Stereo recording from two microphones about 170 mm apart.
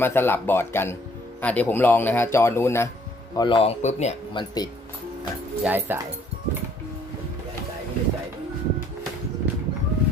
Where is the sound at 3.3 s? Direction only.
30° left (ahead or behind).